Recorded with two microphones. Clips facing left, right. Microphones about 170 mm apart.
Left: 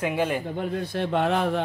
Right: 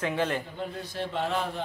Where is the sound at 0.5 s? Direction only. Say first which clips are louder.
Left 7 dB; 60° left (ahead or behind).